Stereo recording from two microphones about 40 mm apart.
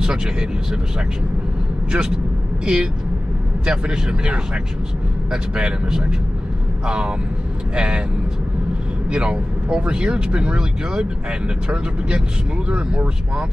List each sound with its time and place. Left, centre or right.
0.0 s speech: centre
1.9 s speech: right
9.1 s speech: right